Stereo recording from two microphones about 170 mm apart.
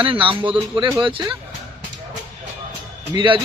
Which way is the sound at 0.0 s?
30° right (ahead or behind).